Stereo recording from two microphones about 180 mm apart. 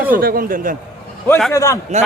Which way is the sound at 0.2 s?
55° right (ahead or behind).